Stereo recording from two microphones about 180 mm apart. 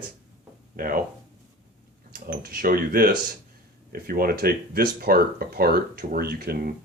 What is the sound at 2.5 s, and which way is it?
Speech, 55° right (ahead or behind).